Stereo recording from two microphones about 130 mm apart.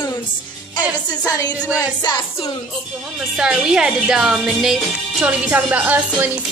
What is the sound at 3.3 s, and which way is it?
A woman's voice, 5° right (ahead or behind).